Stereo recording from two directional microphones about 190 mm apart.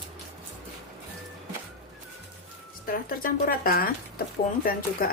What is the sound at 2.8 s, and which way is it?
Speech, 50° left (ahead or behind).